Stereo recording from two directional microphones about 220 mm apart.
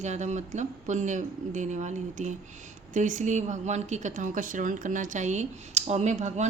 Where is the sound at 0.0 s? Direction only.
30° right (ahead or behind).